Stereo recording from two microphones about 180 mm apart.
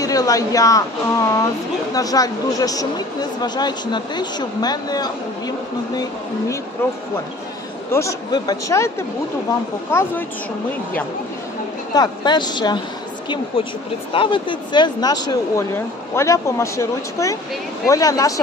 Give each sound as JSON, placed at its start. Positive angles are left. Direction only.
{"t": 0.0, "sound": "speech", "side_deg": 20}
{"t": 7.9, "sound": "a man's voice", "side_deg": 15}
{"t": 11.9, "sound": "speech", "side_deg": 20}
{"t": 14.1, "sound": "speech", "side_deg": 30}